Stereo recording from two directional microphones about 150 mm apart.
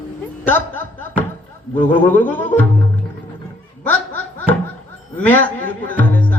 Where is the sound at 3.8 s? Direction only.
10° left (ahead or behind).